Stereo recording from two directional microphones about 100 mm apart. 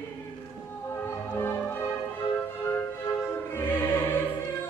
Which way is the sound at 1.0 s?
20° left (ahead or behind).